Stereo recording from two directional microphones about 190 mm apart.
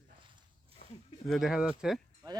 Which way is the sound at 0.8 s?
50° left (ahead or behind).